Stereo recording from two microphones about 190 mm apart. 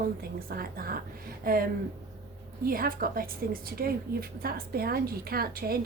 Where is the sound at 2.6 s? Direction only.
50° right (ahead or behind).